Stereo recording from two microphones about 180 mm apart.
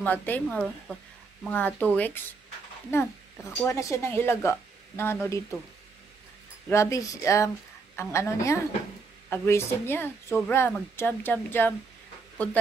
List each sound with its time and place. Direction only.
0.0 s speech: 10° left (ahead or behind)
6.7 s speech: 15° left (ahead or behind)